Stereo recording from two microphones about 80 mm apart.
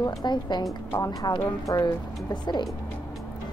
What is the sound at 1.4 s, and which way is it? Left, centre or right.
Speech, left.